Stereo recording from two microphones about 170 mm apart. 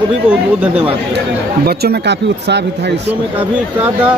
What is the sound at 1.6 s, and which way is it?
Speech, 65° right (ahead or behind).